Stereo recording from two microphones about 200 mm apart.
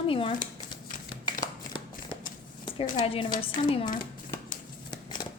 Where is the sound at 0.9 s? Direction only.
40° left (ahead or behind).